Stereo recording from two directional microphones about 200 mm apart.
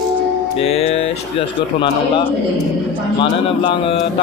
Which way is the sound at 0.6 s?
30° left (ahead or behind).